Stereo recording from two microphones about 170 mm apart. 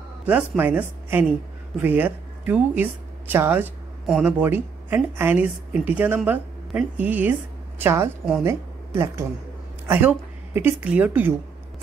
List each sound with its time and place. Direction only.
0.2 s a woman's voice: 10° right (ahead or behind)